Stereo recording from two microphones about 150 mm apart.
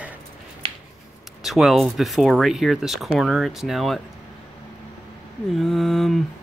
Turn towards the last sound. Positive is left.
turn(degrees=0)  # may be behind; listen again after turning